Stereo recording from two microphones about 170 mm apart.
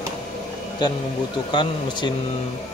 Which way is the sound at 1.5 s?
25° left (ahead or behind).